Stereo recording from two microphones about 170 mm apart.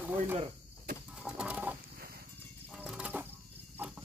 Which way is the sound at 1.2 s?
5° right (ahead or behind).